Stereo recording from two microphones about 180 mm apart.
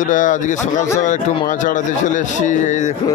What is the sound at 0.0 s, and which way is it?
A man's voice, 45° left (ahead or behind).